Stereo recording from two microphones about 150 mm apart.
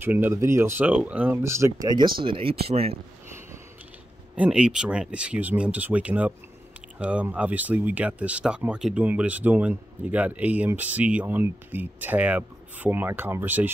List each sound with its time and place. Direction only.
0.0 s speech: 15° right (ahead or behind); by 3.0 s 40° right (ahead or behind)
4.4 s speech: 5° right (ahead or behind)